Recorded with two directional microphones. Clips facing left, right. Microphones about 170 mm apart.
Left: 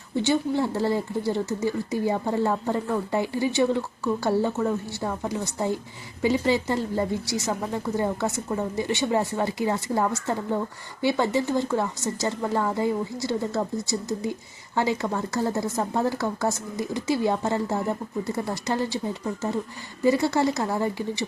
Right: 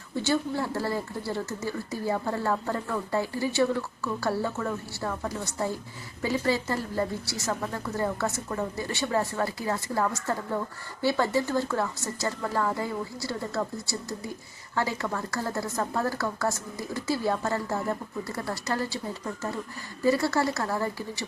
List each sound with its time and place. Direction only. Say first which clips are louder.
0.2 s speech: left 4 dB; 20° left (ahead or behind)